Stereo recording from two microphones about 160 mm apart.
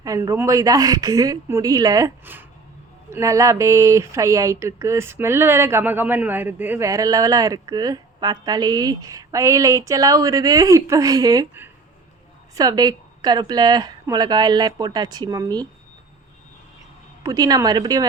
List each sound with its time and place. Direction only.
0.0 s speech: 20° right (ahead or behind)
17.2 s speech: 25° right (ahead or behind)